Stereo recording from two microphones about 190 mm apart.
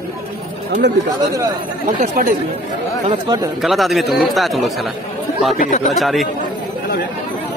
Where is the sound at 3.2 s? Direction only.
20° right (ahead or behind).